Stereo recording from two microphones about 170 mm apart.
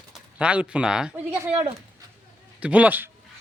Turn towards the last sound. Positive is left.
turn(degrees=-10)  # may be behind; listen again after turning